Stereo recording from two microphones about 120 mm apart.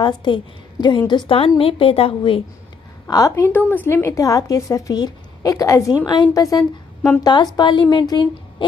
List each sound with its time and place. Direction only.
0.0 s a woman's voice: 40° left (ahead or behind)
3.1 s a woman's voice: 30° left (ahead or behind)
6.0 s a woman's voice: 40° left (ahead or behind)